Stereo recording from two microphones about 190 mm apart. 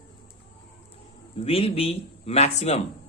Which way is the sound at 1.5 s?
30° left (ahead or behind).